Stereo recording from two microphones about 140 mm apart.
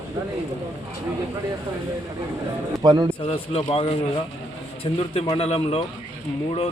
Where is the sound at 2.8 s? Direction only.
30° right (ahead or behind).